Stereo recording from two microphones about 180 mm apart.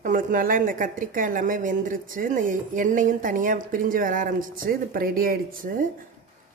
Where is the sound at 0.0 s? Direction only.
45° right (ahead or behind).